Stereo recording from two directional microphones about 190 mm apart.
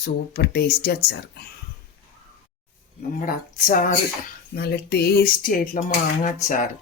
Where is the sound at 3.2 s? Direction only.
45° left (ahead or behind).